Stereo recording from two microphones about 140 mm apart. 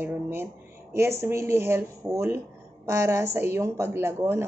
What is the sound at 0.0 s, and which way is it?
Speech, 15° right (ahead or behind).